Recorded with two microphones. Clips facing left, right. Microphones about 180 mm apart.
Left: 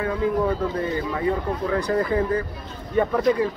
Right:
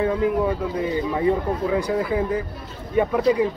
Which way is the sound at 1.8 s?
10° right (ahead or behind).